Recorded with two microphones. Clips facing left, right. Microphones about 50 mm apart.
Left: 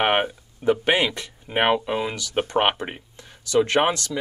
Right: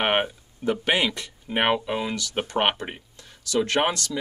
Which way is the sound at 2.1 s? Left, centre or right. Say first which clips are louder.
Left 3 dB; centre.